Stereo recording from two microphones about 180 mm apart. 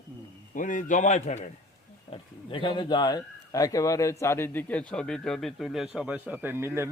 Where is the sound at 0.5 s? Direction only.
45° left (ahead or behind).